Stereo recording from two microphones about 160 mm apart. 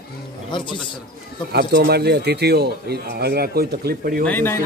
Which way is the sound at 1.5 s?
90° right.